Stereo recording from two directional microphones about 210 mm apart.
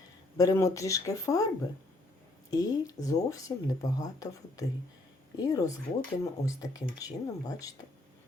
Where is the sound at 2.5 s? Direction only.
15° left (ahead or behind).